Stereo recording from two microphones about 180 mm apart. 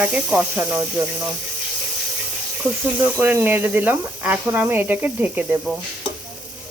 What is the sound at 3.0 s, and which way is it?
Speech, 10° right (ahead or behind).